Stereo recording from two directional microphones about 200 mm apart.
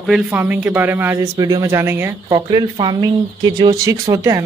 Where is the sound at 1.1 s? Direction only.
20° right (ahead or behind).